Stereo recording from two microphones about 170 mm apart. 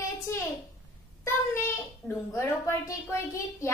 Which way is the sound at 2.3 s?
15° left (ahead or behind).